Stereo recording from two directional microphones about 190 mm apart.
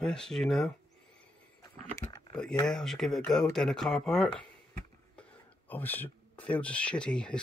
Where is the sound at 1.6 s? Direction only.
20° left (ahead or behind).